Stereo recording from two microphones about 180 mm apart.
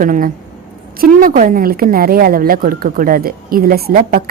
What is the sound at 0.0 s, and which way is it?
A woman's voice, 50° right (ahead or behind).